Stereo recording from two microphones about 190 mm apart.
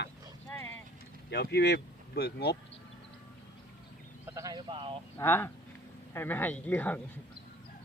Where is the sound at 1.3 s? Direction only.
60° left (ahead or behind).